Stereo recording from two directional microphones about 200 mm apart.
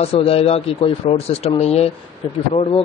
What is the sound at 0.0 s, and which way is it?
Speech, 30° left (ahead or behind).